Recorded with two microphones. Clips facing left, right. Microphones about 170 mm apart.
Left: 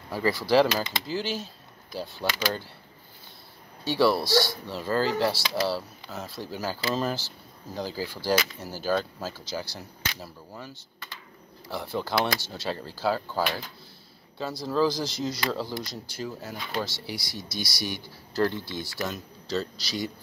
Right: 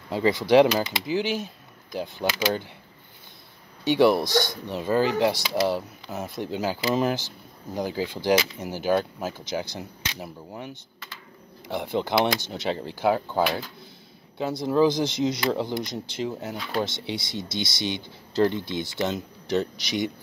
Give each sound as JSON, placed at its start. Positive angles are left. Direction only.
{"t": 0.1, "sound": "speech", "side_deg": -20}
{"t": 3.8, "sound": "speech", "side_deg": -20}